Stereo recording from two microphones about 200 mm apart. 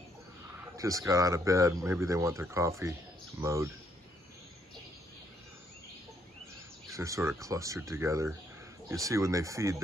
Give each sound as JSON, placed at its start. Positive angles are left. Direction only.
{"t": 0.7, "sound": "speech", "side_deg": -15}
{"t": 6.9, "sound": "speech", "side_deg": -15}